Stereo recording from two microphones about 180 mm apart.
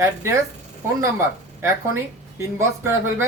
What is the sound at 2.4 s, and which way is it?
Speech, 15° right (ahead or behind).